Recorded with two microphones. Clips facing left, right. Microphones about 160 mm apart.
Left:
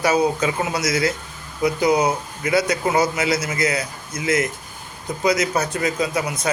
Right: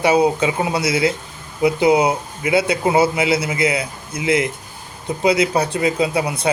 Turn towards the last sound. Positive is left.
turn(degrees=-30)  # may be behind; listen again after turning